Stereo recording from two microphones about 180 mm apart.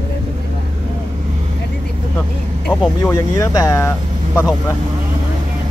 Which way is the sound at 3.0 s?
15° left (ahead or behind).